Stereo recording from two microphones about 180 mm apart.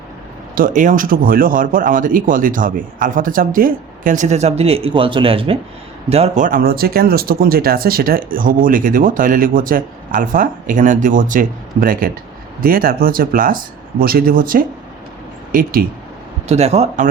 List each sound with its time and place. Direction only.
0.5 s speech: 50° right (ahead or behind)
16.5 s a man's voice: 35° right (ahead or behind)